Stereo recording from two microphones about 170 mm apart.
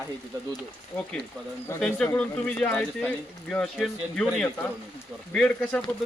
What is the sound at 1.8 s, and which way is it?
Speech, 5° left (ahead or behind).